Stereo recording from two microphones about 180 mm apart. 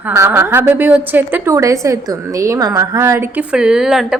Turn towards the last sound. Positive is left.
turn(degrees=-5)  # may be behind; listen again after turning